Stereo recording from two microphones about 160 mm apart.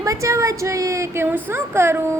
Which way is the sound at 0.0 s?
20° right (ahead or behind).